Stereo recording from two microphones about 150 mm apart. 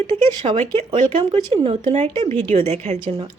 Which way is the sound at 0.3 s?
35° right (ahead or behind).